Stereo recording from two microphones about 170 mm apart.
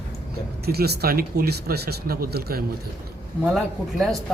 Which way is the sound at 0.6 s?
70° right (ahead or behind).